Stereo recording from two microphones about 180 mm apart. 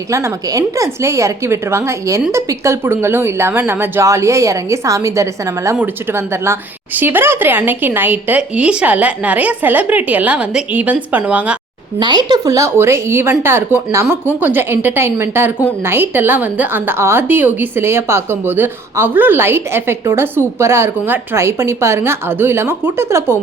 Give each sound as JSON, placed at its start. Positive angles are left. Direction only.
{"t": 0.1, "sound": "speech", "side_deg": -15}
{"t": 11.9, "sound": "speech", "side_deg": -25}